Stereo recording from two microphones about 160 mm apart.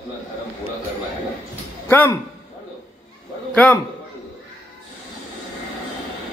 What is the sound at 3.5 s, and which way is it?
Speech, 10° left (ahead or behind).